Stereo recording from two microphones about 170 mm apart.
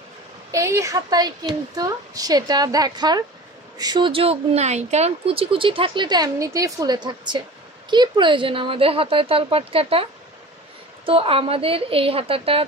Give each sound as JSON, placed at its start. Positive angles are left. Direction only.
{"t": 0.5, "sound": "speech", "side_deg": -15}
{"t": 11.1, "sound": "speech", "side_deg": -30}